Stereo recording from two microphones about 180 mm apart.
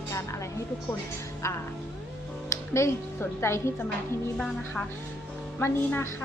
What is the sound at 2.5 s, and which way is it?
Speech, 15° left (ahead or behind).